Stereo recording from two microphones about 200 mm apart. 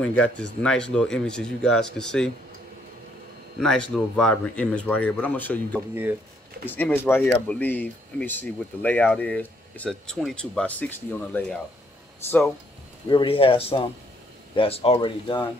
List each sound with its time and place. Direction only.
0.0 s speech: 5° left (ahead or behind)
3.5 s speech: 5° left (ahead or behind)
13.1 s speech: 25° left (ahead or behind)